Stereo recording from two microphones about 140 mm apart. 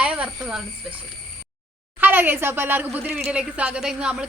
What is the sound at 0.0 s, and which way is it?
Speech, 10° right (ahead or behind).